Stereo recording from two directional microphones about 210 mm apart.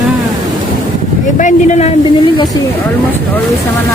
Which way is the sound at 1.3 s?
35° left (ahead or behind).